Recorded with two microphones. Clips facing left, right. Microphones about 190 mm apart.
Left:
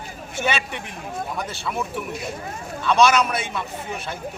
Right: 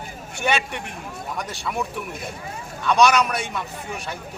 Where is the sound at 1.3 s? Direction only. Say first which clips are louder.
Right 3 dB; centre (ahead or behind).